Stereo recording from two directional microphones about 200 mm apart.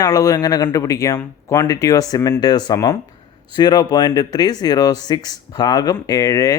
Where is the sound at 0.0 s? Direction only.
15° left (ahead or behind).